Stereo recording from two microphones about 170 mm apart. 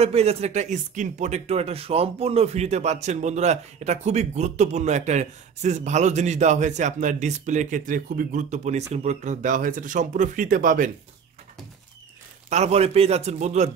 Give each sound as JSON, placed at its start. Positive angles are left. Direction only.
{"t": 0.0, "sound": "speech", "side_deg": -35}
{"t": 12.4, "sound": "a man's voice", "side_deg": -40}